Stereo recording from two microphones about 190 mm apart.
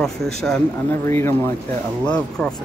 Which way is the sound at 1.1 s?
15° left (ahead or behind).